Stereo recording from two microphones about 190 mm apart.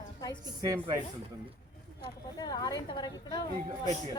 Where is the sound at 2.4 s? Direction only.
20° left (ahead or behind).